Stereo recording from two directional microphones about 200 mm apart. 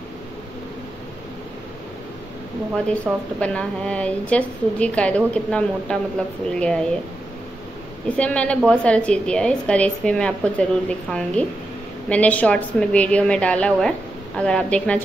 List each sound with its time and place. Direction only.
2.9 s a woman's voice: 5° left (ahead or behind)
8.2 s a woman's voice: 5° left (ahead or behind)